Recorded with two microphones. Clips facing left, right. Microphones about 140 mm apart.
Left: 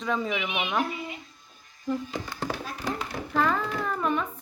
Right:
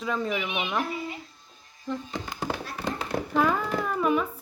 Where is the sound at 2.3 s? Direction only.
15° right (ahead or behind).